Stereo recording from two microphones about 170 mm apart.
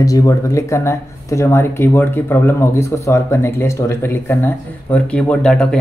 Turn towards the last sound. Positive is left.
turn(degrees=5)  # may be behind; listen again after turning